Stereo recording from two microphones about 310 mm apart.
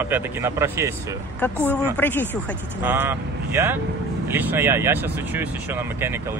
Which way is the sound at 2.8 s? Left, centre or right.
Centre.